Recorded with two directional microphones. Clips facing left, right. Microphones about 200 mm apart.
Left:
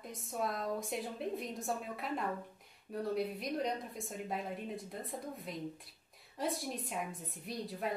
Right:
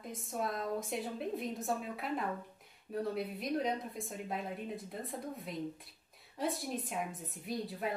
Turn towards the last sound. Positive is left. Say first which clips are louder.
# right 1 dB
turn(degrees=0)  # may be behind; listen again after turning